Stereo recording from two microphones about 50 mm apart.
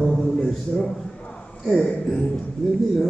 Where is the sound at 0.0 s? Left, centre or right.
Centre.